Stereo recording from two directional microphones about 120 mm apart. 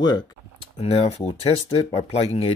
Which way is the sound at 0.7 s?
55° left (ahead or behind).